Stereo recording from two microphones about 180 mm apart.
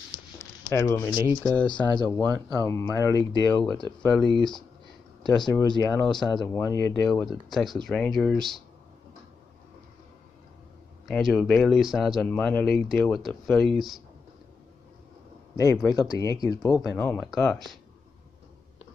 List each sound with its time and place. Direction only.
0.7 s speech: 15° left (ahead or behind)
1.7 s speech: 25° left (ahead or behind)
4.0 s speech: 5° left (ahead or behind)
5.2 s speech: 25° left (ahead or behind)
6.9 s speech: 5° left (ahead or behind)
11.1 s speech: centre (ahead or behind)
15.5 s speech: 20° left (ahead or behind)